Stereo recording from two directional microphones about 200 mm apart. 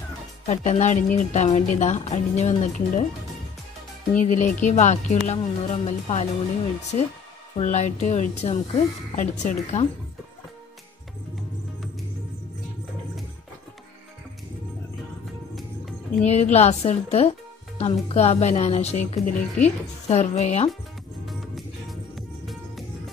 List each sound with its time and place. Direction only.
0.5 s speech: 35° left (ahead or behind)
4.2 s speech: 40° left (ahead or behind)
7.5 s speech: 35° left (ahead or behind)
15.5 s music: centre (ahead or behind)
16.3 s speech: 35° left (ahead or behind)
21.3 s music: centre (ahead or behind)